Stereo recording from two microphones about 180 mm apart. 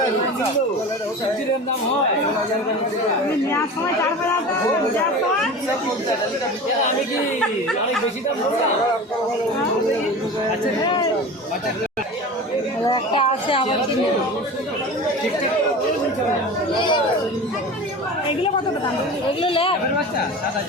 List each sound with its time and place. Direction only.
10.8 s a woman's voice: 25° left (ahead or behind)
12.8 s a woman's voice: 25° left (ahead or behind)
16.7 s a woman's voice: 25° left (ahead or behind)
19.4 s speech: 30° left (ahead or behind)